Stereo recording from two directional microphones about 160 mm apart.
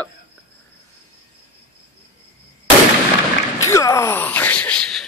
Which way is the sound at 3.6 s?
20° left (ahead or behind).